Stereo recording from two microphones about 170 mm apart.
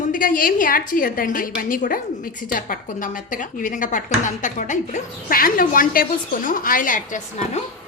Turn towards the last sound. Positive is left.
turn(degrees=45)  # may be behind; listen again after turning